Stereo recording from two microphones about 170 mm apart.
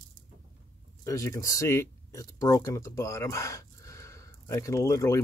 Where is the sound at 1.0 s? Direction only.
20° left (ahead or behind).